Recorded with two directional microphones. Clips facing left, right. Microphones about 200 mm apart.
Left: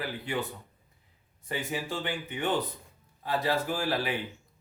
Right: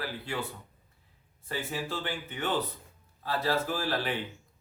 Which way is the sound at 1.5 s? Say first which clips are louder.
Left 1 dB; 15° left (ahead or behind).